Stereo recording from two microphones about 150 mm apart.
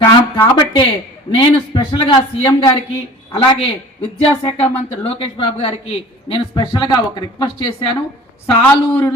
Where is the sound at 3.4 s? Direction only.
30° left (ahead or behind).